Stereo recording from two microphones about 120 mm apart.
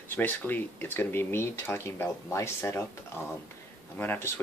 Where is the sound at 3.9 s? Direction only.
15° left (ahead or behind).